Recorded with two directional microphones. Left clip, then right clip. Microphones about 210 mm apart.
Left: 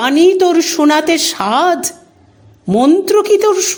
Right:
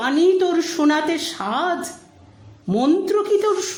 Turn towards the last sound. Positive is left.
turn(degrees=35)  # may be behind; listen again after turning